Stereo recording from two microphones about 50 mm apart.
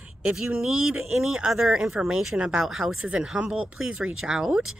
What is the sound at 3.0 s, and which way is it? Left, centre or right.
Speech, right.